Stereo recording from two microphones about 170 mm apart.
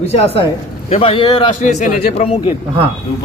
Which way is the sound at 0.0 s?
35° left (ahead or behind).